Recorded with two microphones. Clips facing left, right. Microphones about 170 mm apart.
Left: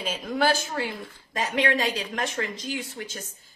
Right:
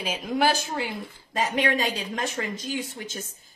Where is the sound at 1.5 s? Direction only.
25° right (ahead or behind).